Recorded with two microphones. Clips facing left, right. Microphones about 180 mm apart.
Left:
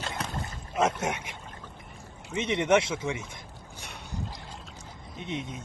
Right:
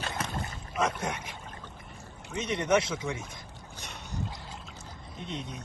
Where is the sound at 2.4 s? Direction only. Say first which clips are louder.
Left 3 dB; 25° left (ahead or behind).